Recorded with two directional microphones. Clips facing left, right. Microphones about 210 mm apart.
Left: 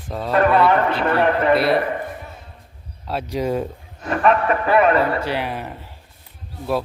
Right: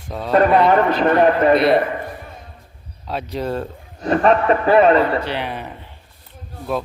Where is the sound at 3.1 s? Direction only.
10° left (ahead or behind).